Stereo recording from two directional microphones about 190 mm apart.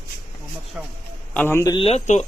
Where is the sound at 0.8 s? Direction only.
5° right (ahead or behind).